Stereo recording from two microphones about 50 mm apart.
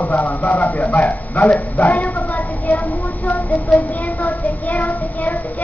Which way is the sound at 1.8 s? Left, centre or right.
Left.